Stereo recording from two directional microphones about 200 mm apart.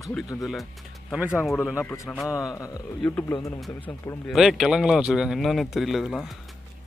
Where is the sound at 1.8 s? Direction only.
10° left (ahead or behind).